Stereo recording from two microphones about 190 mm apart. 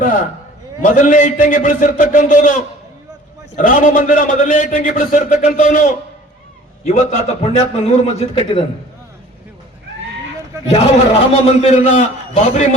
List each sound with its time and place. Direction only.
0.0 s a man's voice: 45° left (ahead or behind)
10.7 s a man's voice: 35° left (ahead or behind)